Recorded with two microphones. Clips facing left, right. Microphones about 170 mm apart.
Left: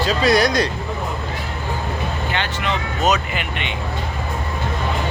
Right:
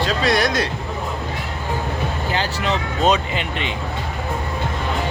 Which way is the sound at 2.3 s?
35° right (ahead or behind).